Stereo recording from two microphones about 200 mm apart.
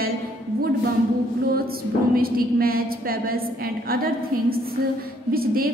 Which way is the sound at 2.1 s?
50° right (ahead or behind).